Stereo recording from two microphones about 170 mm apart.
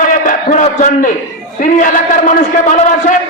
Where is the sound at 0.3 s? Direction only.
45° left (ahead or behind).